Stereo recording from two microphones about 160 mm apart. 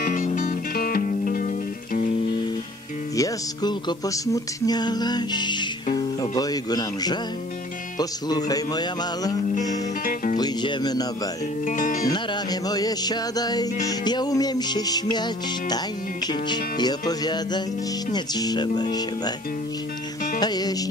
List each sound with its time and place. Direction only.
0.0 s music: 50° left (ahead or behind)
3.2 s music: 25° left (ahead or behind)
11.6 s music: 55° left (ahead or behind)
12.1 s music: 25° left (ahead or behind)
16.3 s music: 25° left (ahead or behind)
20.3 s music: 25° left (ahead or behind)